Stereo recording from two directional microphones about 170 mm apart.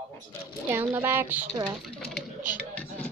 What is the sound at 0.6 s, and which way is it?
Speech, 10° right (ahead or behind).